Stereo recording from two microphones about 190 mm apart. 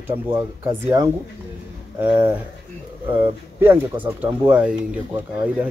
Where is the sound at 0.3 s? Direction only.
15° right (ahead or behind).